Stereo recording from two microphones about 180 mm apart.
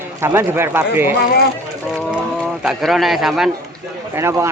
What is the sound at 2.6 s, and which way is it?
Speech, centre (ahead or behind).